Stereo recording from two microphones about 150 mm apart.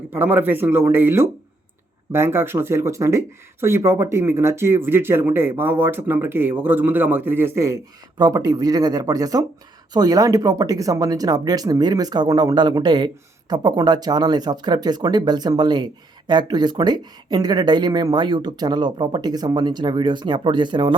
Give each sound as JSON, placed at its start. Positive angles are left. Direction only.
{"t": 0.1, "sound": "speech", "side_deg": -15}